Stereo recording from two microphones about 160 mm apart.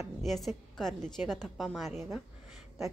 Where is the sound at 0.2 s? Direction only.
Centre (ahead or behind).